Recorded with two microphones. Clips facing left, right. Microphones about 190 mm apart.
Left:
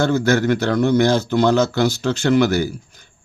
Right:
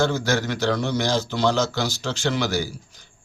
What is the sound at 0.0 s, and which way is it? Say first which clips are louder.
A man's voice: left 5 dB; 55° left (ahead or behind).